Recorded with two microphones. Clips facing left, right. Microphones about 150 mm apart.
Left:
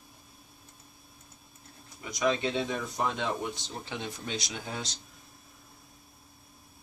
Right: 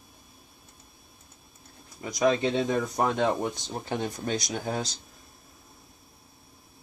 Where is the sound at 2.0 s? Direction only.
35° right (ahead or behind).